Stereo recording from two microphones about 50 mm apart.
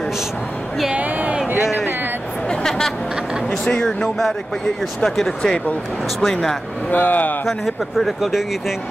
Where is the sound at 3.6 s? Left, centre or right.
Centre.